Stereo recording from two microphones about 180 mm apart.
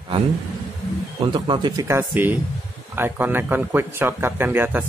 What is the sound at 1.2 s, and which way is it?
Speech, 25° right (ahead or behind).